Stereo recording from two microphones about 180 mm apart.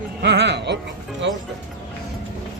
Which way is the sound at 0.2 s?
70° right (ahead or behind).